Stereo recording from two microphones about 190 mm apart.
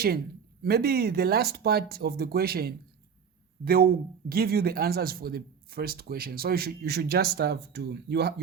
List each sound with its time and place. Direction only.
0.6 s speech: 55° right (ahead or behind)